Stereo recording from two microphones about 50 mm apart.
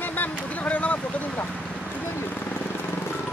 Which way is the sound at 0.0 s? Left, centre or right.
Left.